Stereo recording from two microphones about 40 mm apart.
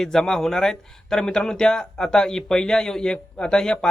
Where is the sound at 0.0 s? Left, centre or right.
Centre.